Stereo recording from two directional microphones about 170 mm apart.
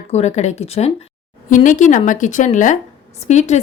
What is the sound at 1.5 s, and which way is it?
Speech, 50° left (ahead or behind).